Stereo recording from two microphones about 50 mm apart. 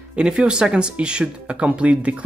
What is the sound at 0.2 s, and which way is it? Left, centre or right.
Speech, centre.